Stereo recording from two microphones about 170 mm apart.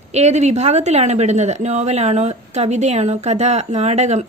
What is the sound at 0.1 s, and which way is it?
A woman's voice, 40° right (ahead or behind).